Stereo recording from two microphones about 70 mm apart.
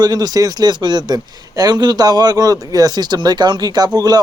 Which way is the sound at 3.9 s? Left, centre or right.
Right.